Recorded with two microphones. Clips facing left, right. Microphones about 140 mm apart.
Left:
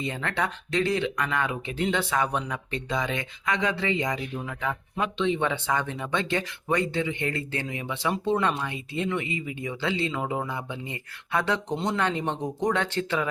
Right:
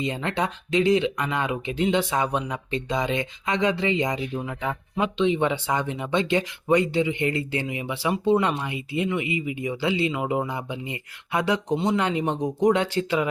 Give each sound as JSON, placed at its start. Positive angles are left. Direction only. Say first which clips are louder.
{"t": 0.0, "sound": "speech", "louder": "right 3 dB", "side_deg": -20}